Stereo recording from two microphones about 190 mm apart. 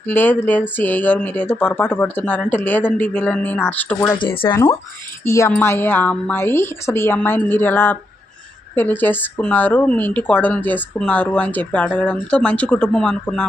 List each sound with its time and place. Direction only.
0.1 s speech: 10° left (ahead or behind)